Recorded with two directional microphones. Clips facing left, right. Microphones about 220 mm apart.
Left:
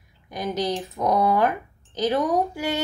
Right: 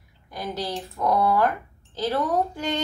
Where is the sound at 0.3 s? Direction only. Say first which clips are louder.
Left 4 dB; 15° left (ahead or behind).